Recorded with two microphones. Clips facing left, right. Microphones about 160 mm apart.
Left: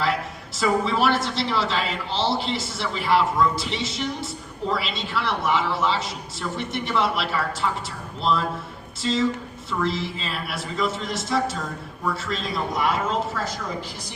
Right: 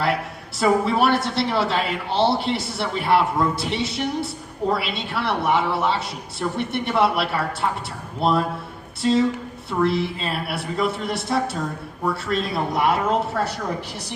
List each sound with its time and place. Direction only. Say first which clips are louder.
0.6 s a woman's voice: right 3 dB; 55° right (ahead or behind)